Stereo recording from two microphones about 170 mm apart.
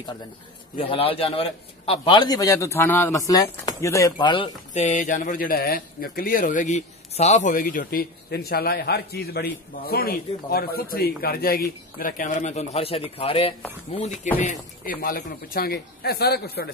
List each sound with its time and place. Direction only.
0.7 s a man's voice: 35° left (ahead or behind)
4.7 s speech: 50° left (ahead or behind)
14.4 s speech: 50° left (ahead or behind); by 16.6 s 70° left (ahead or behind)